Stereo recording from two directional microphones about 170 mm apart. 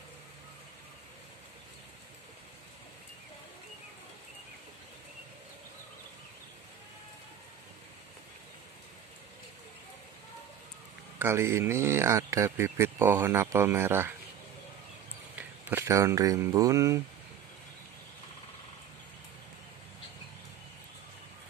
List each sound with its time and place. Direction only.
11.1 s speech: 15° right (ahead or behind)
15.3 s speech: 10° right (ahead or behind)